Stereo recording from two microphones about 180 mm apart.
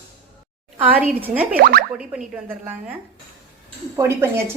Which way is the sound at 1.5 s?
60° right (ahead or behind).